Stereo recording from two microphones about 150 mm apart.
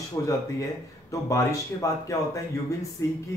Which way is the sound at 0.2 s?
20° left (ahead or behind).